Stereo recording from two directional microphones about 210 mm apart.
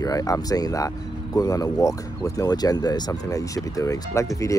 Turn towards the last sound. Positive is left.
turn(degrees=15)  # may be behind; listen again after turning